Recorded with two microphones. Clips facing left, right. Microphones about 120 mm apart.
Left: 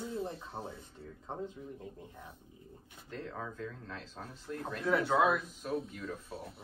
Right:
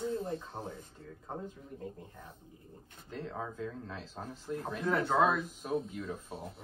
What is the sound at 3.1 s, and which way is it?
Speech, 5° right (ahead or behind).